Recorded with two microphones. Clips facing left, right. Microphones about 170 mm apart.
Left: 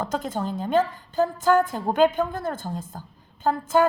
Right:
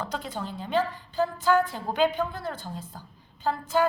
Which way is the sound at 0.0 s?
45° left (ahead or behind).